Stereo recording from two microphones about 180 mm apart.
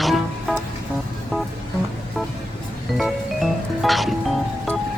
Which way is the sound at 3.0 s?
Centre (ahead or behind).